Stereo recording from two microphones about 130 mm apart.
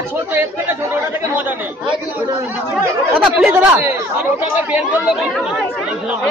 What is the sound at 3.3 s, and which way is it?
Speech, 10° right (ahead or behind).